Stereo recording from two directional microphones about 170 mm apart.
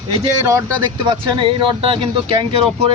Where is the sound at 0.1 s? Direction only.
35° right (ahead or behind).